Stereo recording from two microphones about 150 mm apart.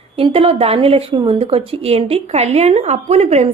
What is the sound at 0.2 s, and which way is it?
A woman's voice, 40° right (ahead or behind).